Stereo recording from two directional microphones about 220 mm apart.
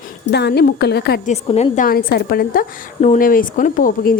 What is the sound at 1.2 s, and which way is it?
A woman's voice, 30° left (ahead or behind).